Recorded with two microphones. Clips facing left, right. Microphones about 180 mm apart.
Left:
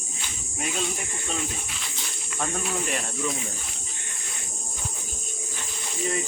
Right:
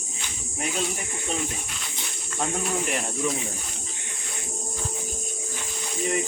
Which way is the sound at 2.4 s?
20° right (ahead or behind).